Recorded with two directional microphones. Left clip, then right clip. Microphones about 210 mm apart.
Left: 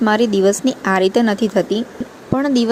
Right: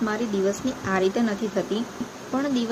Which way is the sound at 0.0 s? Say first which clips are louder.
Left 11 dB; 40° left (ahead or behind).